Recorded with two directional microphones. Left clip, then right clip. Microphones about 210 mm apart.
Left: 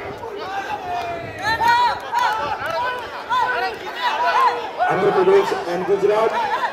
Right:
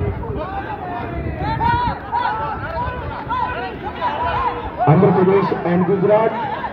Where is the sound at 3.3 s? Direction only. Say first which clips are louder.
Left 3 dB; 5° right (ahead or behind).